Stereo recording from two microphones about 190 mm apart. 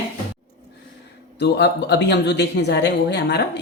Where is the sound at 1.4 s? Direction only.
60° left (ahead or behind).